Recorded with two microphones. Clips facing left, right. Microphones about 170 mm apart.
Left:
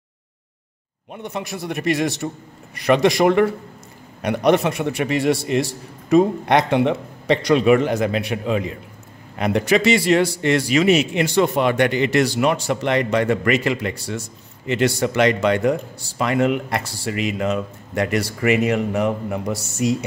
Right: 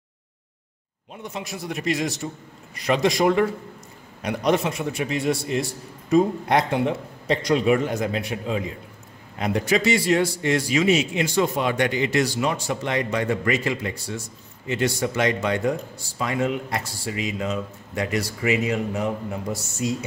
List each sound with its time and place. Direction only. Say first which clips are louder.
1.1 s a man's voice: left 4 dB; 65° left (ahead or behind)